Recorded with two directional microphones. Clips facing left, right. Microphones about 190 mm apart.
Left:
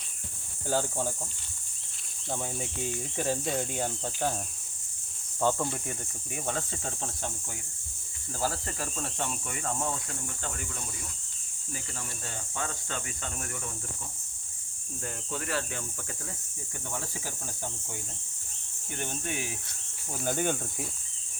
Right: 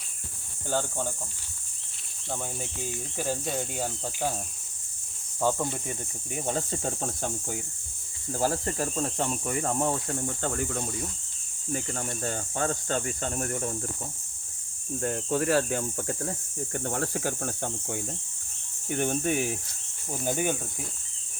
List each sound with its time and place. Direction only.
0.7 s speech: 5° left (ahead or behind)
2.3 s speech: centre (ahead or behind)
5.4 s cricket: 10° right (ahead or behind)
6.4 s speech: 35° right (ahead or behind)
8.8 s speech: 30° right (ahead or behind); by 10.8 s 45° right (ahead or behind)
11.7 s cricket: 55° right (ahead or behind)
12.2 s speech: 40° right (ahead or behind)
15.0 s speech: 55° right (ahead or behind)
18.9 s cricket: 50° right (ahead or behind)
20.1 s cricket: 15° right (ahead or behind)